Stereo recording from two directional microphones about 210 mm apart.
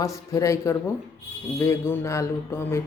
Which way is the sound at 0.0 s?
15° left (ahead or behind).